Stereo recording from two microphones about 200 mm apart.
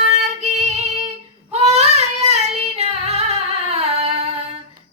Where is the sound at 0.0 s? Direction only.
35° right (ahead or behind).